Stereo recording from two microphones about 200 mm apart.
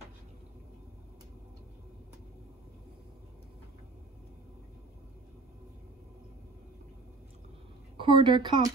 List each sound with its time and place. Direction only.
8.0 s a woman's voice: 25° right (ahead or behind)